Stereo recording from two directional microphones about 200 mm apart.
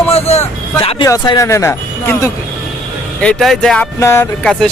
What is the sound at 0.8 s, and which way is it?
Speech, 30° left (ahead or behind).